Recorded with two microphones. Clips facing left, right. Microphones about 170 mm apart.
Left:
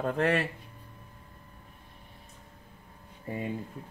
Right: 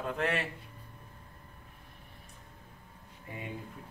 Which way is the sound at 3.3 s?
35° left (ahead or behind).